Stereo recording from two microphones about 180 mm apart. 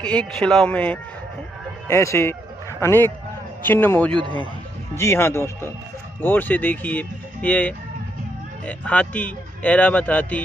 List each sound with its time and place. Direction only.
0.0 s a man's voice: 5° left (ahead or behind)